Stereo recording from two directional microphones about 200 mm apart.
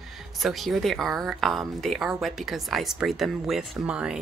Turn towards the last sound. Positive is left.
turn(degrees=-5)  # may be behind; listen again after turning